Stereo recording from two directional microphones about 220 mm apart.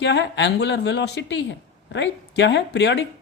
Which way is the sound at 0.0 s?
55° left (ahead or behind).